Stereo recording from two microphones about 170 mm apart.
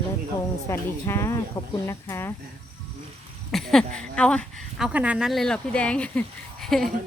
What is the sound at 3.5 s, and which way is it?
Speech, centre (ahead or behind).